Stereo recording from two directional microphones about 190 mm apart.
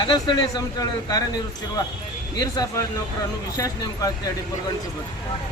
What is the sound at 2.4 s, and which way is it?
A man's voice, 20° left (ahead or behind).